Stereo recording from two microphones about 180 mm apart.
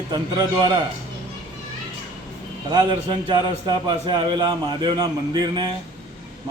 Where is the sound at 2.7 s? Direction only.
30° right (ahead or behind).